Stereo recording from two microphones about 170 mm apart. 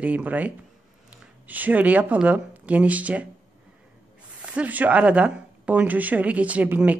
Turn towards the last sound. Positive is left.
turn(degrees=-10)  # may be behind; listen again after turning